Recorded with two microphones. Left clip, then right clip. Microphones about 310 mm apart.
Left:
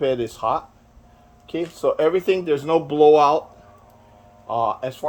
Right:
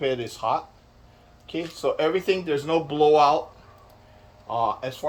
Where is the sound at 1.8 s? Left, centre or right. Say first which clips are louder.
Left 4 dB; left.